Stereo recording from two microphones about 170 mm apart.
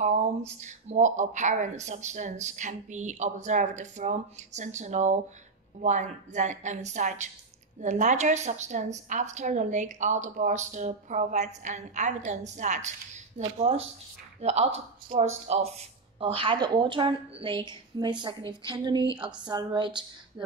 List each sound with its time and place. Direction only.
0.6 s a woman's voice: 45° right (ahead or behind); by 20.5 s 25° right (ahead or behind)